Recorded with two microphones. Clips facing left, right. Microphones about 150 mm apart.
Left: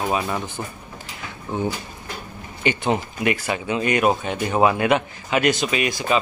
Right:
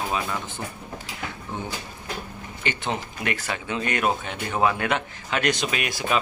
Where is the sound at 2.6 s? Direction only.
15° left (ahead or behind).